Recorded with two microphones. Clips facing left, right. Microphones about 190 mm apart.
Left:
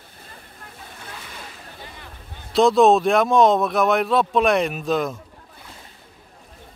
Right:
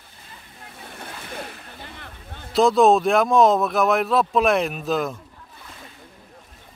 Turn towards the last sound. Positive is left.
turn(degrees=0)  # may be behind; listen again after turning